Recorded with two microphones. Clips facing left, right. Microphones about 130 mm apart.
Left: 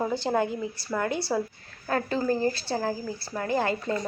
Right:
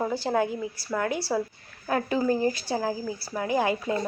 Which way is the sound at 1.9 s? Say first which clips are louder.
Right 1 dB; 15° right (ahead or behind).